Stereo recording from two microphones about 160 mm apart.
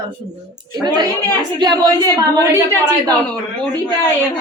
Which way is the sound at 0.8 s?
25° right (ahead or behind).